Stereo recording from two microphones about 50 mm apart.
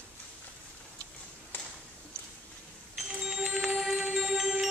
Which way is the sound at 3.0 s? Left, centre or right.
Centre.